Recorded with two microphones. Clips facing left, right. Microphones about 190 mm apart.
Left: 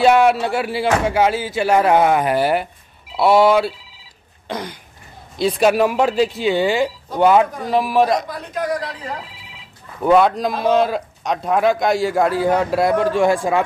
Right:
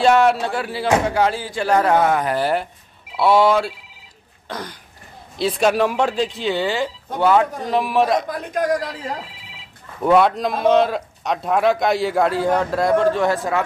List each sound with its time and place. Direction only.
0.0 s speech: 10° left (ahead or behind)
4.5 s throat clearing: 15° left (ahead or behind)
5.4 s speech: centre (ahead or behind)
7.7 s a man's voice: centre (ahead or behind)
10.0 s a man's voice: centre (ahead or behind)